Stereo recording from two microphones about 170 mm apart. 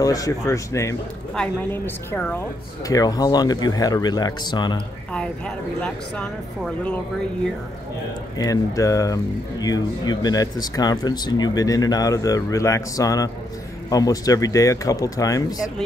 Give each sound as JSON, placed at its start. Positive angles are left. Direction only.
{"t": 0.0, "sound": "speech", "side_deg": 20}
{"t": 1.3, "sound": "speech", "side_deg": 5}
{"t": 2.9, "sound": "speech", "side_deg": 20}
{"t": 5.8, "sound": "speech", "side_deg": 5}
{"t": 8.4, "sound": "speech", "side_deg": 20}